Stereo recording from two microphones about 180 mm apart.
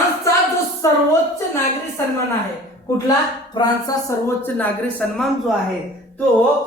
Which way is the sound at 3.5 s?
25° left (ahead or behind).